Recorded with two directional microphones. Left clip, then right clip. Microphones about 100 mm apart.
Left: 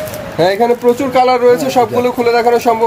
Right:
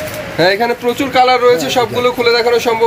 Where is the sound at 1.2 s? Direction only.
45° left (ahead or behind).